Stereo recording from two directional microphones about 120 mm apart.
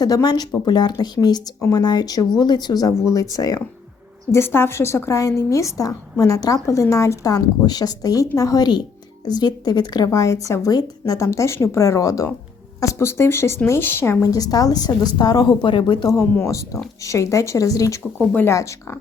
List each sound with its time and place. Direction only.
0.0 s speech: 35° left (ahead or behind)
4.3 s a woman's voice: 20° left (ahead or behind); by 16.0 s 45° left (ahead or behind)
16.0 s a woman's voice: 20° left (ahead or behind)